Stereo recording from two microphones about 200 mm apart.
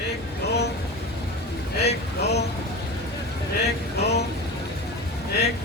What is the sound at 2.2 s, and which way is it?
Vehicle, 55° left (ahead or behind).